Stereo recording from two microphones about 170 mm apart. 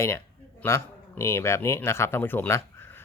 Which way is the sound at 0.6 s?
15° left (ahead or behind).